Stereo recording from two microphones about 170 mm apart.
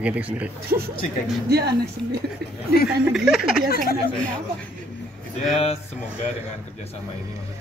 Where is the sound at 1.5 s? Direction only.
70° right (ahead or behind).